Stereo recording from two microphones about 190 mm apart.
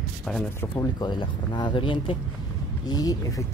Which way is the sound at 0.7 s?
25° left (ahead or behind).